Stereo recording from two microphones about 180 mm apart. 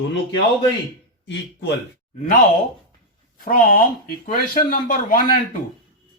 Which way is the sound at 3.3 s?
50° left (ahead or behind).